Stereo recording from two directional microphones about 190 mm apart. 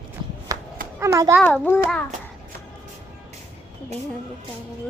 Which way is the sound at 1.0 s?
15° right (ahead or behind).